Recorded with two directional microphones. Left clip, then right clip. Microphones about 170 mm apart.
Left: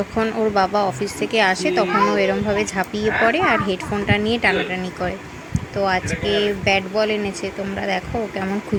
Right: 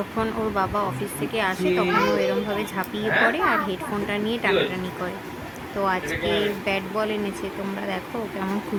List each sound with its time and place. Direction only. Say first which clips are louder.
0.2 s speech: left 6 dB; 20° left (ahead or behind)
5.8 s speech: left 3 dB; 10° left (ahead or behind)